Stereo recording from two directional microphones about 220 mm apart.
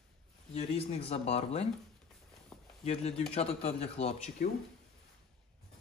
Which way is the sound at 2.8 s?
30° left (ahead or behind).